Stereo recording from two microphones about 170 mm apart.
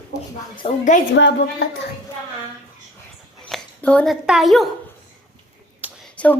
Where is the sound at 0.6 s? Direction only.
30° left (ahead or behind).